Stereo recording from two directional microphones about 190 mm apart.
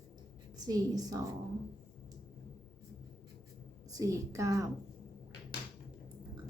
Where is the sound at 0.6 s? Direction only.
20° right (ahead or behind).